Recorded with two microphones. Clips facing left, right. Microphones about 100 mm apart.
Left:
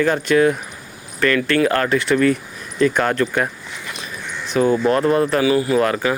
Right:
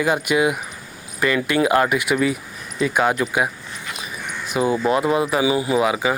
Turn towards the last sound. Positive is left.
turn(degrees=-10)  # may be behind; listen again after turning